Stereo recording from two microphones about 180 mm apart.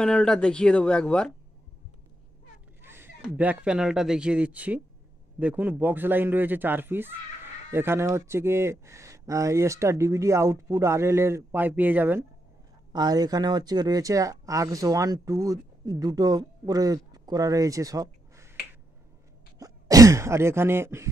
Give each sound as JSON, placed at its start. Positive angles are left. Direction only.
{"t": 0.0, "sound": "speech", "side_deg": 5}
{"t": 2.8, "sound": "speech", "side_deg": -10}
{"t": 12.9, "sound": "speech", "side_deg": -20}
{"t": 19.6, "sound": "throat clearing", "side_deg": -20}